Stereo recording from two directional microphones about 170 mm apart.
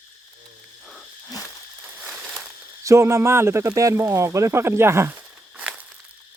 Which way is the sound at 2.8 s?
15° right (ahead or behind).